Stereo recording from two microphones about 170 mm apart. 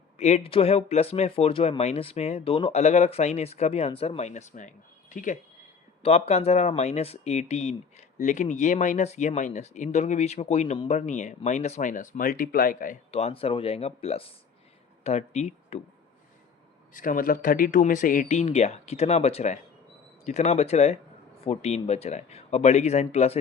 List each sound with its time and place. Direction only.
0.2 s speech: 40° left (ahead or behind)
6.0 s speech: 40° left (ahead or behind)
13.1 s speech: 40° left (ahead or behind)
16.9 s speech: 55° left (ahead or behind)